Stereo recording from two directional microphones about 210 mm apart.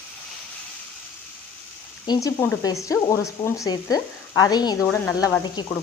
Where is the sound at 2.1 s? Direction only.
15° left (ahead or behind).